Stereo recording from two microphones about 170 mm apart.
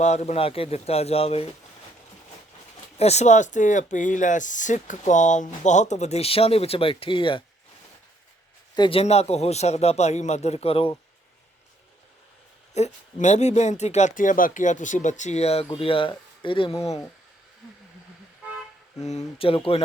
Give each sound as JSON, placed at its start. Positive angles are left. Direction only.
{"t": 0.0, "sound": "speech", "side_deg": 40}
{"t": 3.0, "sound": "speech", "side_deg": 40}
{"t": 8.7, "sound": "speech", "side_deg": 30}
{"t": 12.7, "sound": "speech", "side_deg": 45}
{"t": 19.0, "sound": "speech", "side_deg": 35}